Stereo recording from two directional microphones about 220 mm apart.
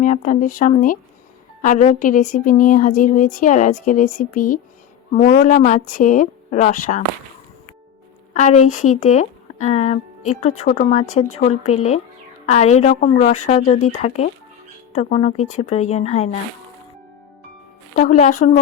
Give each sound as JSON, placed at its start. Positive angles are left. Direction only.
{"t": 0.0, "sound": "speech", "side_deg": 35}
{"t": 8.3, "sound": "speech", "side_deg": 35}
{"t": 17.9, "sound": "speech", "side_deg": 35}